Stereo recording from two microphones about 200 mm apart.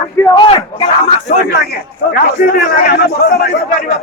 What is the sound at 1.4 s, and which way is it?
Speech, 50° left (ahead or behind).